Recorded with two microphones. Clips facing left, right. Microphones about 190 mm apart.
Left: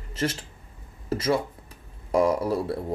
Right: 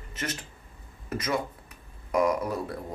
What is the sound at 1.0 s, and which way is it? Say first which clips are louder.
Speech: left 5 dB; 30° left (ahead or behind).